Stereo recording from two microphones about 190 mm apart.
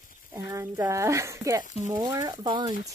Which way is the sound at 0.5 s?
15° right (ahead or behind).